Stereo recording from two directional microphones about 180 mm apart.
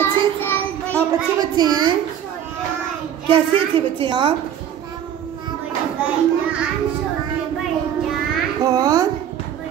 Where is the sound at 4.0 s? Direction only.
25° right (ahead or behind).